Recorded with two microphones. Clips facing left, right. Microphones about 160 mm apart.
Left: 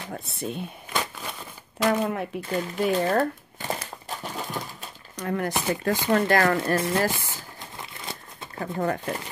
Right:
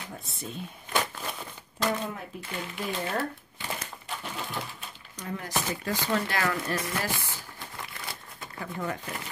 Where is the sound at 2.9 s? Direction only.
40° left (ahead or behind).